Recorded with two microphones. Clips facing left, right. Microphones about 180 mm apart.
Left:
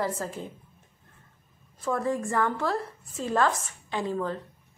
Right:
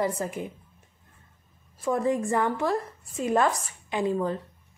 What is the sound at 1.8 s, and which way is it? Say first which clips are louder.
A woman's voice: right 3 dB; 15° right (ahead or behind).